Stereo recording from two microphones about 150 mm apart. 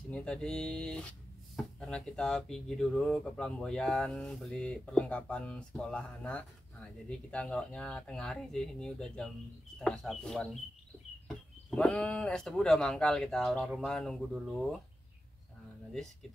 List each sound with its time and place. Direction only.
0.1 s speech: 5° left (ahead or behind)